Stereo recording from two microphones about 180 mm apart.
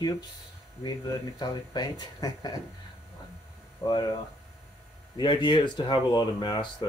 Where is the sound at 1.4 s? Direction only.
25° left (ahead or behind).